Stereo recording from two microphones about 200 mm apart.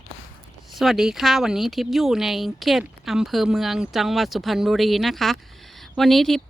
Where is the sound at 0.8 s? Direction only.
Centre (ahead or behind).